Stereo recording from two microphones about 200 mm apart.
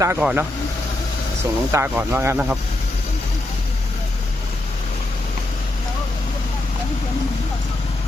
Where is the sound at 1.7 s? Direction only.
10° right (ahead or behind).